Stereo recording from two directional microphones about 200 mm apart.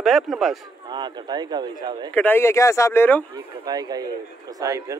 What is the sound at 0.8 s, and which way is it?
Speech, 20° right (ahead or behind).